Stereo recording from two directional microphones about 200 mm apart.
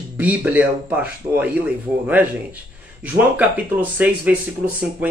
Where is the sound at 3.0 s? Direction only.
10° right (ahead or behind).